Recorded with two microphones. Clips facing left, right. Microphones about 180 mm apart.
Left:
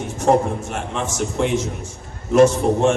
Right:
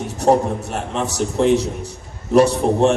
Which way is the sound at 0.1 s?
35° right (ahead or behind).